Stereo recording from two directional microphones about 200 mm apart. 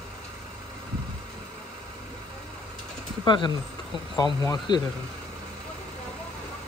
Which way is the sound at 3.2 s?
20° left (ahead or behind).